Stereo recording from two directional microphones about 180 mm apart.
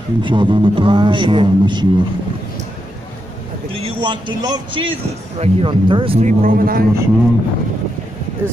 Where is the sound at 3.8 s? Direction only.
25° right (ahead or behind).